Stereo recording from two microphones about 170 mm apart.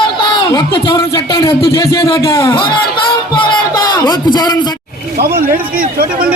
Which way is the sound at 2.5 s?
30° left (ahead or behind).